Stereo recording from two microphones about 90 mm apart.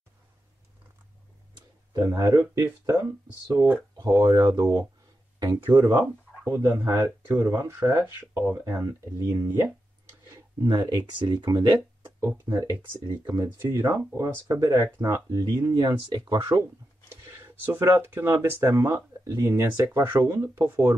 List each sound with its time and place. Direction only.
2.0 s speech: 35° right (ahead or behind)
3.9 s speech: 40° right (ahead or behind)
5.7 s speech: 25° right (ahead or behind)
10.9 s speech: 50° right (ahead or behind)
12.6 s speech: 25° right (ahead or behind); by 16.6 s 50° right (ahead or behind)
17.3 s speech: 30° right (ahead or behind)